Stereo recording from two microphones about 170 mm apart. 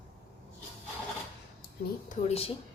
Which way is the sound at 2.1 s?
35° left (ahead or behind).